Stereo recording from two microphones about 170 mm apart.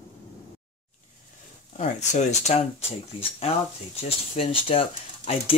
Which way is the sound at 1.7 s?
45° left (ahead or behind).